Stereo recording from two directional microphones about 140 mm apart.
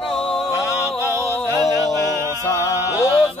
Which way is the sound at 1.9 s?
25° left (ahead or behind).